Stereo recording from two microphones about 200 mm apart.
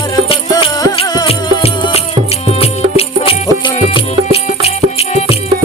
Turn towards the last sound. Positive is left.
turn(degrees=30)  # may be behind; listen again after turning